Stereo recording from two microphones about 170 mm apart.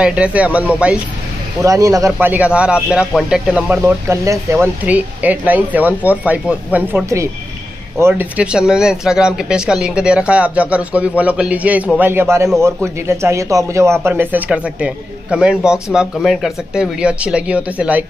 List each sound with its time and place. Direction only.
0.0 s a man's voice: 5° right (ahead or behind)
1.6 s a man's voice: 20° right (ahead or behind)